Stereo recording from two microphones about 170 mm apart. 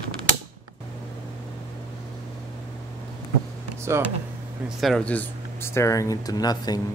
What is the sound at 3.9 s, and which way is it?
Speech, 15° right (ahead or behind).